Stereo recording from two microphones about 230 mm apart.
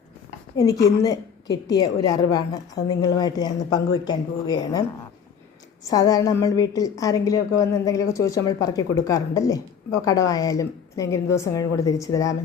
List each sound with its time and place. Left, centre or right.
0.5 s a woman's voice: centre
5.8 s a woman's voice: centre